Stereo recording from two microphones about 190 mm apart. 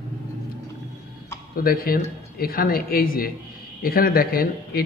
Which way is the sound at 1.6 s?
50° left (ahead or behind).